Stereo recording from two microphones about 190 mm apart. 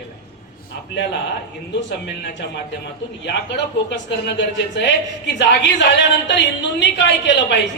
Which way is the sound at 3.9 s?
65° left (ahead or behind).